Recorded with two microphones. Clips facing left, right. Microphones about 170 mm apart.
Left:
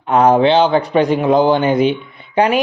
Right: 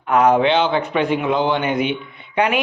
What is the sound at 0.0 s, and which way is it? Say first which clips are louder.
A man's voice: left 3 dB; 30° left (ahead or behind).